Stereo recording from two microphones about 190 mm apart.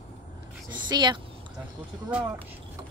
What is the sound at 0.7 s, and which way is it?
Speech, 25° right (ahead or behind).